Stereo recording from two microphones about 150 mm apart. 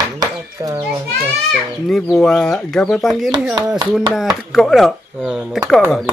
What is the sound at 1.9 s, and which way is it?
Speech, 5° left (ahead or behind).